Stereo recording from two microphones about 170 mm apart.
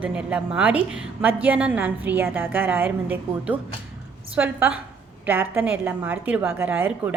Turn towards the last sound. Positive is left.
turn(degrees=-10)  # may be behind; listen again after turning